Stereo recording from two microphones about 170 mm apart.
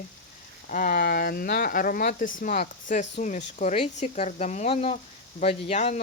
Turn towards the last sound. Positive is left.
turn(degrees=45)  # may be behind; listen again after turning